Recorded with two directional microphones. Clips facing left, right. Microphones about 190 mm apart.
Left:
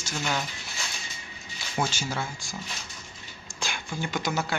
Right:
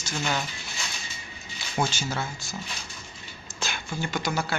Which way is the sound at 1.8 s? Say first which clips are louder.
Right 1 dB; 10° left (ahead or behind).